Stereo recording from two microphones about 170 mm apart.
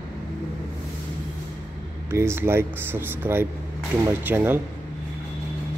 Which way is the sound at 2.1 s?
15° right (ahead or behind).